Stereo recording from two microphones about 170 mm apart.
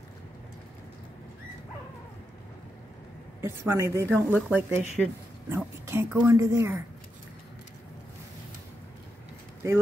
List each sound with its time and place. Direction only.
3.3 s a woman's voice: 15° right (ahead or behind)